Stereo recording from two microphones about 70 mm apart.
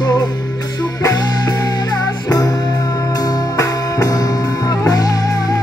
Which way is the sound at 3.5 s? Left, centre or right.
Left.